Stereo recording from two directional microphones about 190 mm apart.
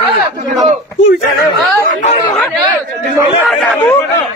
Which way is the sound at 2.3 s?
5° left (ahead or behind).